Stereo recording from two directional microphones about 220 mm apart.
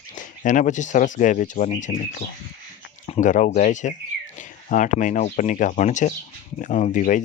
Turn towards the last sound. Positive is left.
turn(degrees=35)  # may be behind; listen again after turning